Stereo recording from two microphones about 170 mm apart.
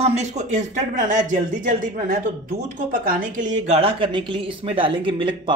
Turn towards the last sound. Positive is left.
turn(degrees=-30)  # may be behind; listen again after turning